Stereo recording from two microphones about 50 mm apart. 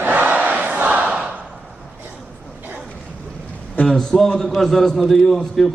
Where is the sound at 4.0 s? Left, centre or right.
Centre.